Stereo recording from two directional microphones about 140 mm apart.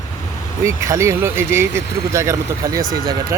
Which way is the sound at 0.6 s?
20° right (ahead or behind).